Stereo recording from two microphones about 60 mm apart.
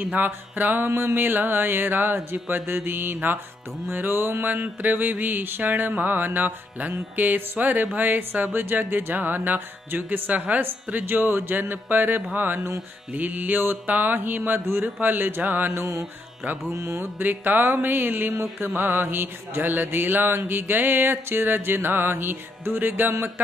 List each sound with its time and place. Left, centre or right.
0.0 s mantra: right
7.2 s speech: right
7.8 s mantra: right
12.5 s music: right
13.1 s mantra: right
15.7 s music: right
16.7 s music: right
17.2 s mantra: right